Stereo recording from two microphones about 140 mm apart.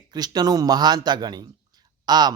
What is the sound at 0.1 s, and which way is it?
Speech, 30° right (ahead or behind).